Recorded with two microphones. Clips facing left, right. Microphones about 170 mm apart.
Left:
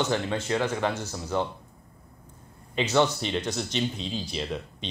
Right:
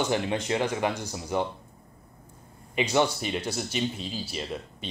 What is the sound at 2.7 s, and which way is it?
Speech, 10° right (ahead or behind).